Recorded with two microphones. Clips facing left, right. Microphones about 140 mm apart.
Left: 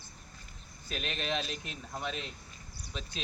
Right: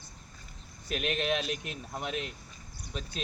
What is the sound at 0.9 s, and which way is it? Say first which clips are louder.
Speech: right 5 dB; 60° right (ahead or behind).